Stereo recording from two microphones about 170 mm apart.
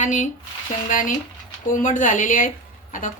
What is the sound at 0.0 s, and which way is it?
Speech, 45° left (ahead or behind).